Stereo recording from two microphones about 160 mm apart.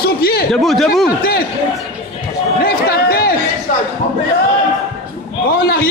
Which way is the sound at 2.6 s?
75° left (ahead or behind).